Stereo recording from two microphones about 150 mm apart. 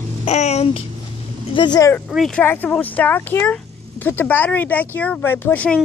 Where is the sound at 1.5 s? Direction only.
30° left (ahead or behind).